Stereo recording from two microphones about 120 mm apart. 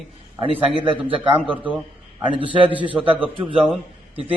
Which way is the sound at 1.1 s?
50° right (ahead or behind).